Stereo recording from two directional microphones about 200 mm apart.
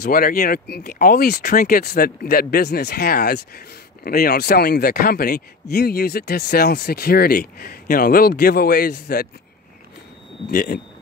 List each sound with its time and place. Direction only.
0.0 s speech: 45° left (ahead or behind)
10.5 s speech: 40° left (ahead or behind)